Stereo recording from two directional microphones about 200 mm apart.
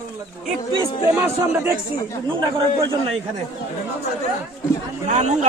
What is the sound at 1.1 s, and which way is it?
Speech, 10° right (ahead or behind).